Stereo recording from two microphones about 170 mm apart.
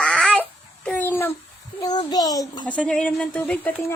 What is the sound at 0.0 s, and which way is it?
Babbling, 5° left (ahead or behind).